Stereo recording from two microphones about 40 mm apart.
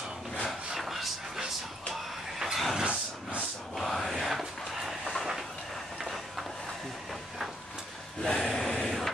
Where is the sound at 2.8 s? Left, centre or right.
Right.